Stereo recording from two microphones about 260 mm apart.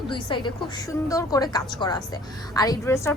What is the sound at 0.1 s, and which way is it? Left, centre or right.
A woman's voice, centre.